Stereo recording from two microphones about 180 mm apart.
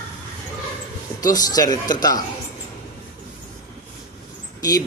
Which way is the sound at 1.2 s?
20° left (ahead or behind).